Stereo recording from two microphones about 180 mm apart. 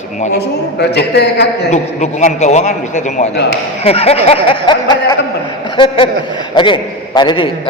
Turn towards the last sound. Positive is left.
turn(degrees=30)  # may be behind; listen again after turning